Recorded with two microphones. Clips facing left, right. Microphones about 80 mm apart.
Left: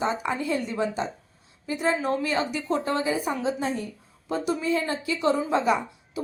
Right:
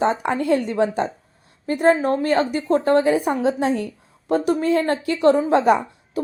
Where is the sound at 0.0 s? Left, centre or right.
Right.